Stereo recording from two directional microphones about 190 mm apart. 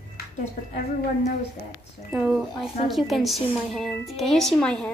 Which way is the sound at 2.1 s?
5° right (ahead or behind).